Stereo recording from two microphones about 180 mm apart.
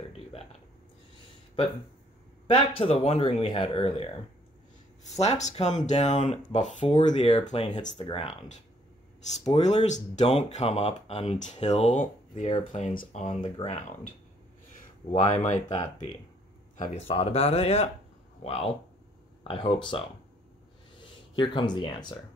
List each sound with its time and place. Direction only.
2.4 s speech: 30° left (ahead or behind)
5.1 s speech: 40° left (ahead or behind)
21.4 s speech: 25° left (ahead or behind)